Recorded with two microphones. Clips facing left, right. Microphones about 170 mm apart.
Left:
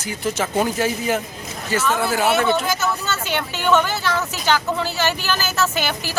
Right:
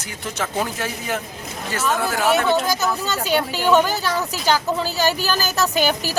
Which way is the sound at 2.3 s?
40° right (ahead or behind).